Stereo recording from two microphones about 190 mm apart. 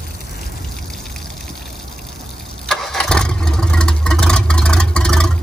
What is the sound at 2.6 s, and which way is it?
Vehicle, 5° left (ahead or behind).